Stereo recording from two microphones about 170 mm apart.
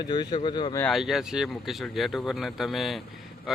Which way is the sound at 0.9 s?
Centre (ahead or behind).